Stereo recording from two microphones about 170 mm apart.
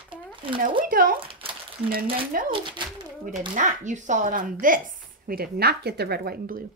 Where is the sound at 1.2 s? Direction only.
30° right (ahead or behind).